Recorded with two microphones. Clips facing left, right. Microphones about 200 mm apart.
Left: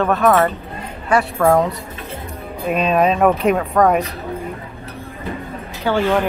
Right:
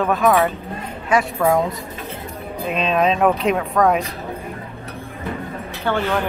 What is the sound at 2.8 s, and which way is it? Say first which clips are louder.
Speech: left 2 dB; 5° left (ahead or behind).